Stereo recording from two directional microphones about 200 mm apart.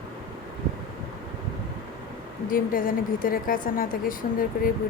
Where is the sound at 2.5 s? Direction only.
45° left (ahead or behind).